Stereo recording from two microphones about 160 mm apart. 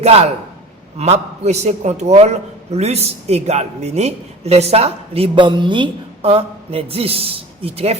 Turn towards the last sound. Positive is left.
turn(degrees=-40)  # may be behind; listen again after turning